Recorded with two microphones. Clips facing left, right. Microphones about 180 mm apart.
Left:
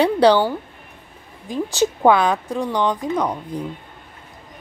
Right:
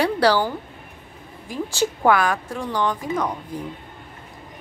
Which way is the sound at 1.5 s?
20° left (ahead or behind).